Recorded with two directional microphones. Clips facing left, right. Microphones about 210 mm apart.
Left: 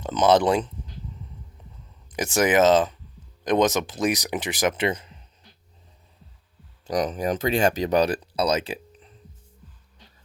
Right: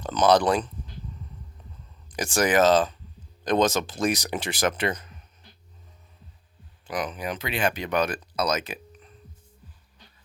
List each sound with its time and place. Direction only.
0.0 s speech: 20° left (ahead or behind)
2.0 s speech: 20° left (ahead or behind)
6.8 s speech: 40° left (ahead or behind)